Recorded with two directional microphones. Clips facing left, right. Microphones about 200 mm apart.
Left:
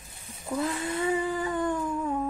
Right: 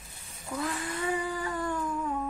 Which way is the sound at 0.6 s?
25° left (ahead or behind).